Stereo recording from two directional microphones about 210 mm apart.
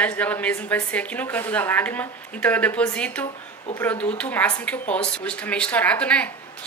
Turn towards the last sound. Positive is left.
turn(degrees=5)  # may be behind; listen again after turning